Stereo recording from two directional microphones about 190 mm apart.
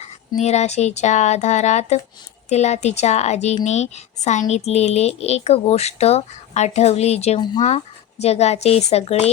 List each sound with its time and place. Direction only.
0.0 s speech: 35° left (ahead or behind)